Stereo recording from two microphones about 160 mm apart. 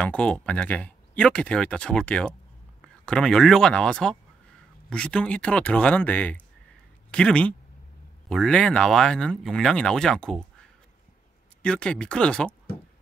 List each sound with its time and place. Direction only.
0.0 s speech: 10° left (ahead or behind)